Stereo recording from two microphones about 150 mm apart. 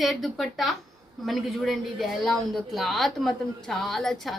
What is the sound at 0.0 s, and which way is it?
Speech, centre (ahead or behind).